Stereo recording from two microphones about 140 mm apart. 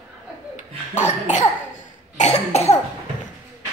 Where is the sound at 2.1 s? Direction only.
50° left (ahead or behind).